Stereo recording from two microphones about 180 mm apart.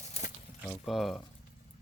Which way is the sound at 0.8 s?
Centre (ahead or behind).